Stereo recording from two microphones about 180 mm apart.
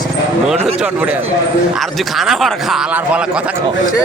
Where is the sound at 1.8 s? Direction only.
Centre (ahead or behind).